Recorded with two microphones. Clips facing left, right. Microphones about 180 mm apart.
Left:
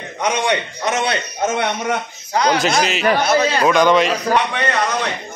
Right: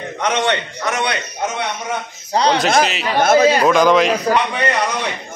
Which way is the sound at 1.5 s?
55° left (ahead or behind).